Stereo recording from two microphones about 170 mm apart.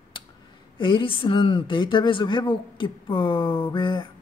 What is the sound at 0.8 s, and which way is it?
Speech, 30° left (ahead or behind).